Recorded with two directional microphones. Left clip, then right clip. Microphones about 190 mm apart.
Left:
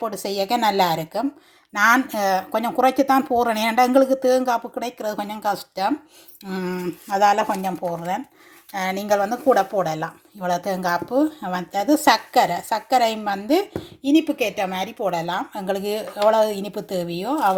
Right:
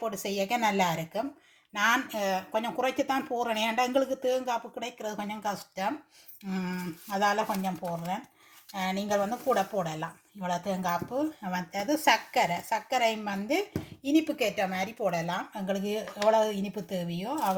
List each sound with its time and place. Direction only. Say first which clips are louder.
0.0 s speech: left 7 dB; 30° left (ahead or behind)
14.0 s speech: left 7 dB; 25° left (ahead or behind); by 17.6 s 45° left (ahead or behind)